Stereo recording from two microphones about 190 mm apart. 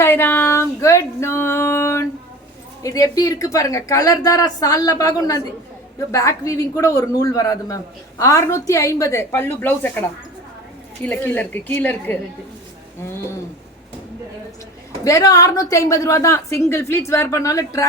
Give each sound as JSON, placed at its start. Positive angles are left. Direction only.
{"t": 0.0, "sound": "a sound", "side_deg": 10}
{"t": 2.8, "sound": "a woman's voice", "side_deg": 20}
{"t": 15.0, "sound": "a woman's voice", "side_deg": 20}